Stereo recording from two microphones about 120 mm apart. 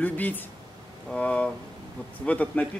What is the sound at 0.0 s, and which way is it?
Speech, 15° left (ahead or behind).